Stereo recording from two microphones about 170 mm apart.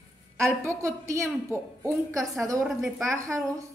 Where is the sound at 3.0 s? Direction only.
20° right (ahead or behind).